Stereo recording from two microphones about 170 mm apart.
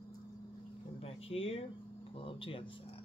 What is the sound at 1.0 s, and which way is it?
Speech, 35° left (ahead or behind).